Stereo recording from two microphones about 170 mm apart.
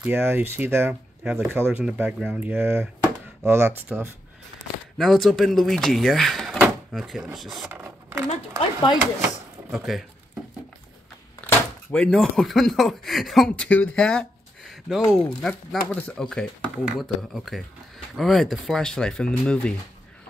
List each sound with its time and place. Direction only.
0.0 s speech: 10° right (ahead or behind)
4.9 s speech: centre (ahead or behind)
8.3 s a woman's voice: 35° left (ahead or behind)
9.7 s speech: centre (ahead or behind)
11.4 s speech: 5° left (ahead or behind)